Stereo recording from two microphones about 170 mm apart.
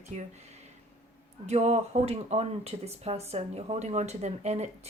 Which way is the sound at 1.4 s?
40° right (ahead or behind).